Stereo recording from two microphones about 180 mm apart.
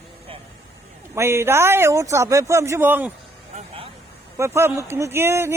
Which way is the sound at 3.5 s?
30° right (ahead or behind).